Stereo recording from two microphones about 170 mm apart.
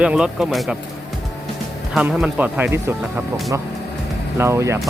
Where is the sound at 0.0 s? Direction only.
5° right (ahead or behind).